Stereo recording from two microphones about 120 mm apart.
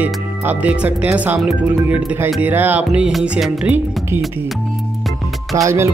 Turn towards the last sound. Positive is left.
turn(degrees=-25)  # may be behind; listen again after turning